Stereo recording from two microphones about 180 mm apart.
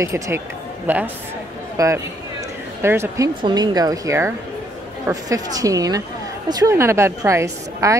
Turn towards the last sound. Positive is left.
turn(degrees=-15)  # may be behind; listen again after turning